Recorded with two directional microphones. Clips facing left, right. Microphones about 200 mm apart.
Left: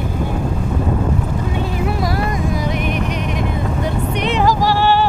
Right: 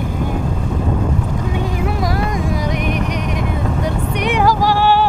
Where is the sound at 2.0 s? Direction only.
10° left (ahead or behind).